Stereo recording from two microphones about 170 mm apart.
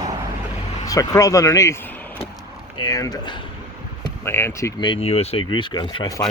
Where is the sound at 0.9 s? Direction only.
20° left (ahead or behind).